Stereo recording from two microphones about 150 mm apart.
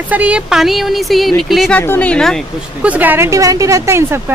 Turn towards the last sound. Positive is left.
turn(degrees=-20)  # may be behind; listen again after turning